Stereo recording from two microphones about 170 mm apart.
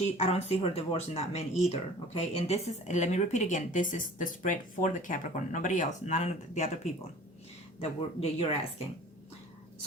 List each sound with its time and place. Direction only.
0.0 s speech: 40° left (ahead or behind)
7.8 s speech: 35° left (ahead or behind)